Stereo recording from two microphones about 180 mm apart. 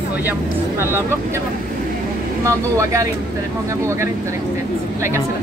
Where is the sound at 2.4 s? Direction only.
15° right (ahead or behind).